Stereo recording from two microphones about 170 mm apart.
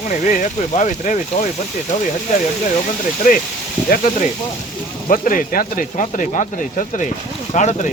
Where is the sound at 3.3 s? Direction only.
50° left (ahead or behind).